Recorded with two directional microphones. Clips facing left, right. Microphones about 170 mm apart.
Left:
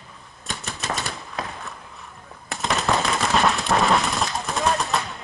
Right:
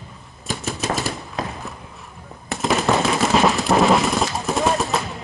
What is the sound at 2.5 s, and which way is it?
Machine gun, centre (ahead or behind).